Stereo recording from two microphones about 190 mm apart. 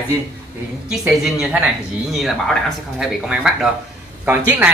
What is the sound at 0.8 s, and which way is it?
Speech, centre (ahead or behind).